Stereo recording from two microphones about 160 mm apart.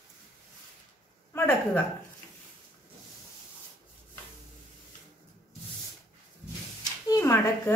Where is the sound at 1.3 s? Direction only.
20° left (ahead or behind).